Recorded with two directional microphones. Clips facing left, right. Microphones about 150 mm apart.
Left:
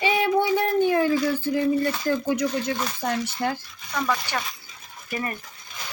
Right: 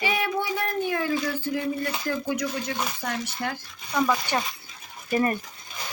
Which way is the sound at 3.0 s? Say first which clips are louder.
Left 5 dB; 30° left (ahead or behind).